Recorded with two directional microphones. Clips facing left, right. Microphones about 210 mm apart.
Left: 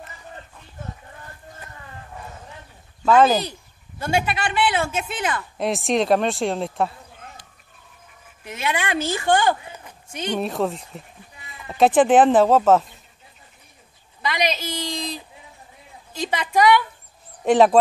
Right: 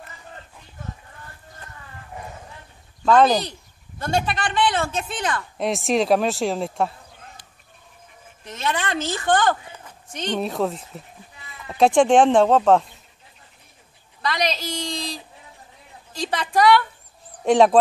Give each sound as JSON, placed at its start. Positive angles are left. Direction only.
{"t": 3.0, "sound": "a man's voice", "side_deg": 5}
{"t": 8.5, "sound": "a man's voice", "side_deg": 10}
{"t": 14.2, "sound": "a man's voice", "side_deg": 5}
{"t": 16.1, "sound": "a man's voice", "side_deg": 5}